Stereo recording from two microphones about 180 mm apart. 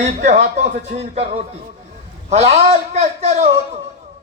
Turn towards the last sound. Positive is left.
turn(degrees=-35)  # may be behind; listen again after turning